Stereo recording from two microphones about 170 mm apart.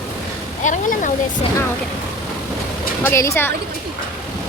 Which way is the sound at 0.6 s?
50° left (ahead or behind).